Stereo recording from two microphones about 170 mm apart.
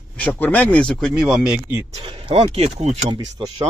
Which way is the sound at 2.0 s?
30° right (ahead or behind).